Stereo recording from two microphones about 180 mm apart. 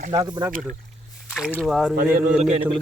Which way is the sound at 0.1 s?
20° right (ahead or behind).